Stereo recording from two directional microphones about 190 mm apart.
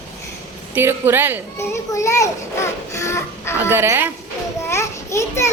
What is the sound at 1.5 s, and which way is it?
Speech, 15° left (ahead or behind).